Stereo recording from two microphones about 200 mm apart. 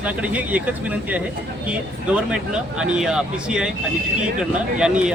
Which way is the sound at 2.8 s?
5° right (ahead or behind).